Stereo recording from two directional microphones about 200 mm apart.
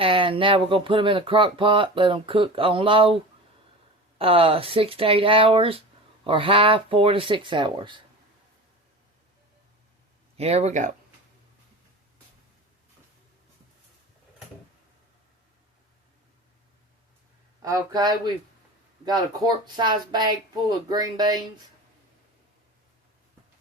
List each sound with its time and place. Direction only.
0.0 s speech: 25° right (ahead or behind)
4.2 s speech: 30° right (ahead or behind)
10.3 s speech: 30° right (ahead or behind)
17.6 s speech: 20° right (ahead or behind)
19.6 s speech: 20° right (ahead or behind)